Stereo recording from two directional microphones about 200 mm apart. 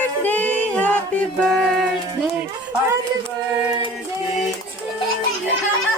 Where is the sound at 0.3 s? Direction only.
10° left (ahead or behind).